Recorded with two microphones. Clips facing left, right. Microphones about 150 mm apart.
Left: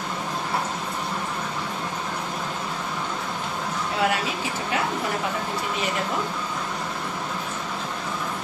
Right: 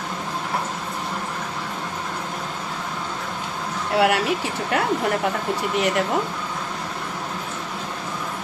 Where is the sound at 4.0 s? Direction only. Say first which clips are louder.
Right 6 dB; 65° right (ahead or behind).